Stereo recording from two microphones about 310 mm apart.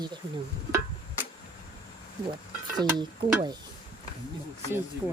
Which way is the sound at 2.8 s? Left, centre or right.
Centre.